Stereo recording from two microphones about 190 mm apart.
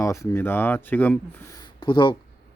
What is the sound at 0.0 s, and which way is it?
Speech, 15° left (ahead or behind).